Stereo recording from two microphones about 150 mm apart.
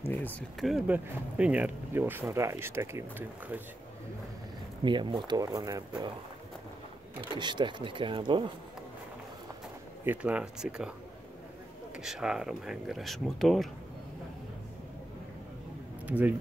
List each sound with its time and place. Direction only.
0.1 s a sound: 10° left (ahead or behind)
0.6 s speech: 5° right (ahead or behind)
4.8 s speech: 30° right (ahead or behind)
7.3 s speech: 30° right (ahead or behind)
10.0 s speech: 10° right (ahead or behind)
12.0 s speech: 5° right (ahead or behind)
16.1 s speech: 10° right (ahead or behind)